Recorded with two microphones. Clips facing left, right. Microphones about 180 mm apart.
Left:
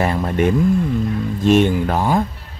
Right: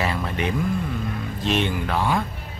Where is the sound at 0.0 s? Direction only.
45° left (ahead or behind).